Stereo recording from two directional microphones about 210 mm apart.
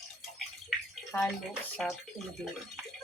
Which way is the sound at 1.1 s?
10° left (ahead or behind).